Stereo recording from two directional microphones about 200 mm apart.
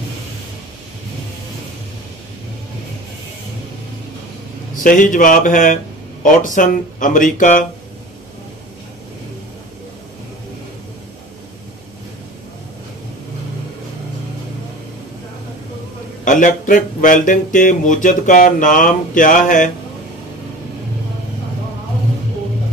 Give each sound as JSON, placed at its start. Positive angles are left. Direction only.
{"t": 4.8, "sound": "speech", "side_deg": 40}
{"t": 16.3, "sound": "speech", "side_deg": 40}